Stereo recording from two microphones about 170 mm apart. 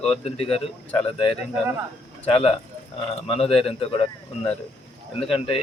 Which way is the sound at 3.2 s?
35° left (ahead or behind).